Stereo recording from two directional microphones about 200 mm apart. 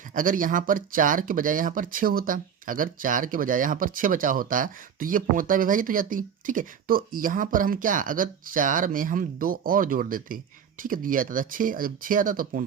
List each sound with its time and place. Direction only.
0.1 s speech: 40° right (ahead or behind)